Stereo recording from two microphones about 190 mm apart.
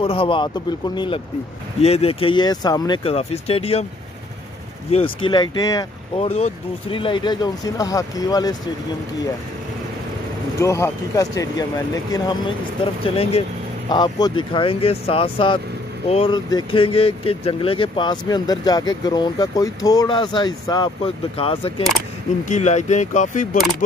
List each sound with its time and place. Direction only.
0.0 s speech: 30° left (ahead or behind)
4.9 s speech: 25° left (ahead or behind)
6.1 s speech: 35° left (ahead or behind)
10.6 s speech: 15° left (ahead or behind); by 23.6 s 40° left (ahead or behind)